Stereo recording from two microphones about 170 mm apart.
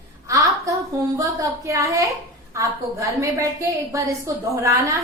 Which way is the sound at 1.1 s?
20° right (ahead or behind).